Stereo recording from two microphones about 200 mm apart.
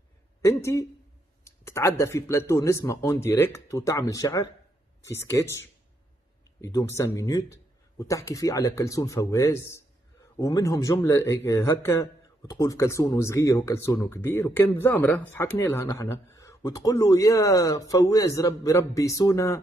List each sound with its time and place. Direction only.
0.4 s speech: 15° left (ahead or behind)